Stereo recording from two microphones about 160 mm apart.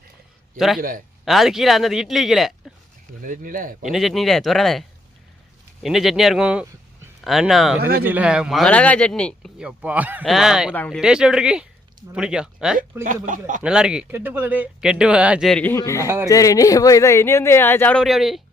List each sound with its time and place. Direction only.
0.8 s speech: 55° right (ahead or behind)
1.2 s speech: centre (ahead or behind)
3.2 s speech: 60° right (ahead or behind)
3.8 s speech: centre (ahead or behind)
7.8 s speech: 75° right (ahead or behind)
8.0 s speech: 10° right (ahead or behind)
8.7 s speech: 10° left (ahead or behind)
9.6 s speech: 5° right (ahead or behind)
13.2 s speech: 55° right (ahead or behind)
13.6 s speech: 5° right (ahead or behind); by 16.0 s 20° left (ahead or behind)
16.0 s speech: 15° right (ahead or behind)
16.3 s speech: 20° left (ahead or behind)
18.0 s speech: centre (ahead or behind)